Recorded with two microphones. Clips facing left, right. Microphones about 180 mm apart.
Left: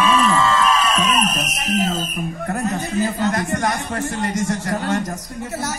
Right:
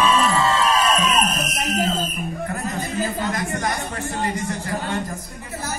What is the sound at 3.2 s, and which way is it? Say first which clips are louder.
Speech: left 4 dB; 45° left (ahead or behind).